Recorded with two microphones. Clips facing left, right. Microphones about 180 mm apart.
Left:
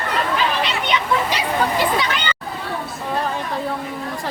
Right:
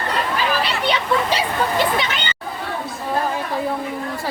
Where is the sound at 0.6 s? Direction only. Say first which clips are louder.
Right 1 dB; 30° right (ahead or behind).